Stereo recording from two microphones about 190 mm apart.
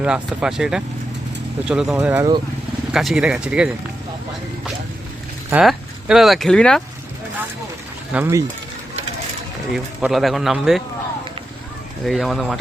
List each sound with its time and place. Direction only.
0.0 s speech: 5° right (ahead or behind)
2.0 s speech: 15° right (ahead or behind)
2.9 s speech: centre (ahead or behind)
5.5 s speech: 5° right (ahead or behind)
8.1 s speech: 15° right (ahead or behind)
9.7 s speech: centre (ahead or behind)
12.0 s speech: centre (ahead or behind)